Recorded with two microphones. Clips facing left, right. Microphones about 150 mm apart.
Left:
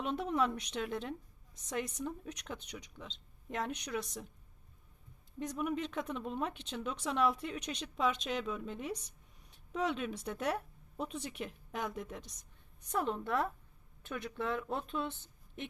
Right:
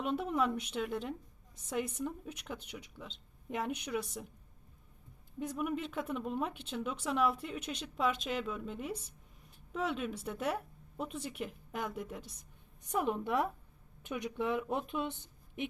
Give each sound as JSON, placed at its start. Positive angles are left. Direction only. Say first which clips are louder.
{"t": 0.0, "sound": "speech", "louder": "right 1 dB", "side_deg": -5}
{"t": 5.4, "sound": "speech", "louder": "even", "side_deg": -5}